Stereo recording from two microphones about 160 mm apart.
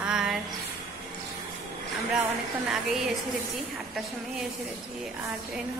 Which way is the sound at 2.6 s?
Centre (ahead or behind).